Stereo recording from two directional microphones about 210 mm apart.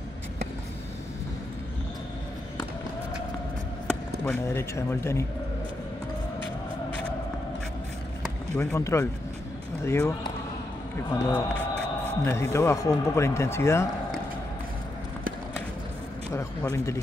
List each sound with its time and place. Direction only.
4.3 s speech: 10° left (ahead or behind)
8.5 s speech: 15° left (ahead or behind)
16.3 s speech: 15° left (ahead or behind)